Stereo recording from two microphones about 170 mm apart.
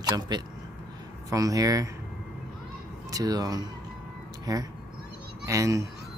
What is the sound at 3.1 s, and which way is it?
Speech, 20° right (ahead or behind).